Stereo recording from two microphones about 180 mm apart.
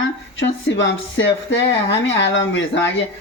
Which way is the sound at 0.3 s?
90° left.